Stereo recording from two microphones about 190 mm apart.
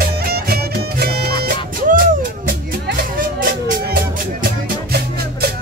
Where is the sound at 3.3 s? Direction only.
45° right (ahead or behind).